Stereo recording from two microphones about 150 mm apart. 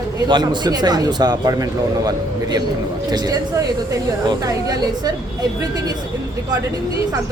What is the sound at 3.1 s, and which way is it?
Speech, 25° right (ahead or behind).